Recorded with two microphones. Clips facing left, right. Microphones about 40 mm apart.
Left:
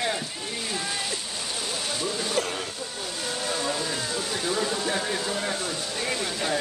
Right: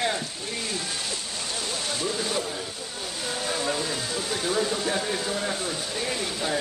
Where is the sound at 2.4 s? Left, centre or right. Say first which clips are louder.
Left 2 dB; left.